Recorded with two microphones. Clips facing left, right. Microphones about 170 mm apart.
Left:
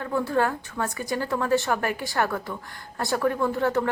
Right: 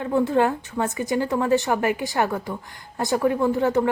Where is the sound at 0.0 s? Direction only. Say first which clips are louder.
Right 4 dB; 20° right (ahead or behind).